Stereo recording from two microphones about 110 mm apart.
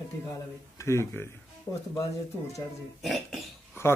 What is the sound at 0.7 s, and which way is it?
Speech, 25° left (ahead or behind).